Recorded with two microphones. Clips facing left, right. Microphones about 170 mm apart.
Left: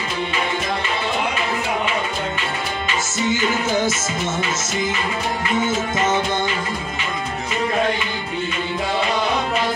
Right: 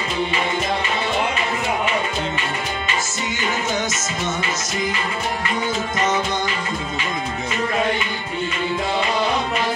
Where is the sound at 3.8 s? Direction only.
30° left (ahead or behind).